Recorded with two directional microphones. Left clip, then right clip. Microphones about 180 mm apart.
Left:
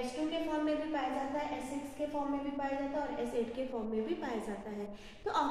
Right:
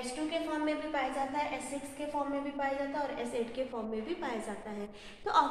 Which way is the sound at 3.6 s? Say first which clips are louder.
Right 3 dB; 15° left (ahead or behind).